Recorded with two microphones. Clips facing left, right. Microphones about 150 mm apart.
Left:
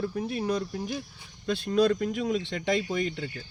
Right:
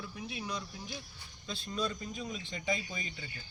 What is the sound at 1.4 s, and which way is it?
Speech, 65° left (ahead or behind).